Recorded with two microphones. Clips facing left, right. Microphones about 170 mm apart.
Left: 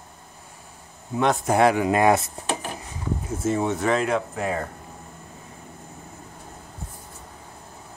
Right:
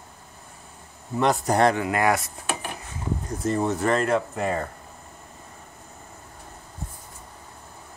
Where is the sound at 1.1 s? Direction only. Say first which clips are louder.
Left 1 dB; centre (ahead or behind).